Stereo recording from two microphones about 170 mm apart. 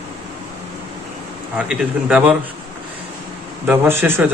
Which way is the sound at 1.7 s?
5° right (ahead or behind).